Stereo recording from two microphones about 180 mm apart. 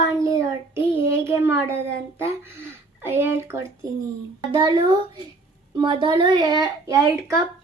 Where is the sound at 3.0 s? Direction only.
10° right (ahead or behind).